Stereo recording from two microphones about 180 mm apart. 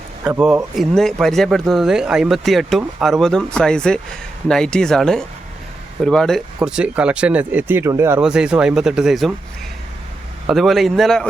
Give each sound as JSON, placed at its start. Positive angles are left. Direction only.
{"t": 0.3, "sound": "speech", "side_deg": -10}
{"t": 10.4, "sound": "speech", "side_deg": 0}